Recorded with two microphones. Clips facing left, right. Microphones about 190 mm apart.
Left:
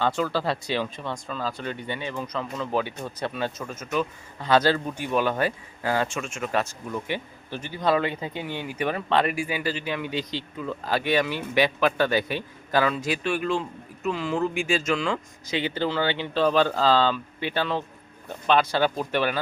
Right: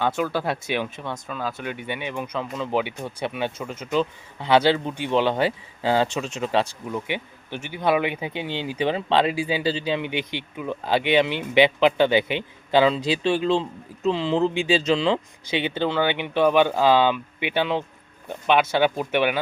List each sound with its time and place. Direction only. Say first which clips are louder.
0.2 s speech: right 1 dB; centre (ahead or behind); by 7.0 s 25° right (ahead or behind)
7.9 s speech: right 2 dB; 15° right (ahead or behind)